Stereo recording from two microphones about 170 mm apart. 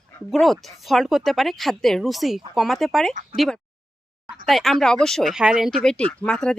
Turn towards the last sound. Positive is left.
turn(degrees=5)  # may be behind; listen again after turning